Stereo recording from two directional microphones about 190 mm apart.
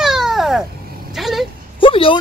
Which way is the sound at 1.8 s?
25° left (ahead or behind).